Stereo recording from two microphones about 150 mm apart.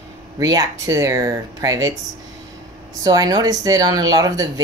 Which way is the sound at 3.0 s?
25° right (ahead or behind).